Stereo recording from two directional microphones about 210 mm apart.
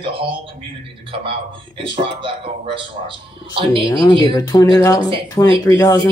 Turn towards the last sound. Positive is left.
turn(degrees=15)  # may be behind; listen again after turning